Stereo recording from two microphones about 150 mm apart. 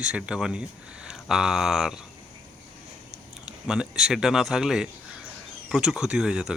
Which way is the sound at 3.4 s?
5° right (ahead or behind).